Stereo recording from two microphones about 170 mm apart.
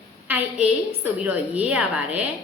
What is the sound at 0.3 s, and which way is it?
A woman's voice, 5° right (ahead or behind).